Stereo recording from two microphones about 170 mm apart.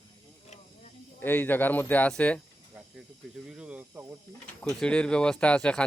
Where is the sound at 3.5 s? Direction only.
5° right (ahead or behind).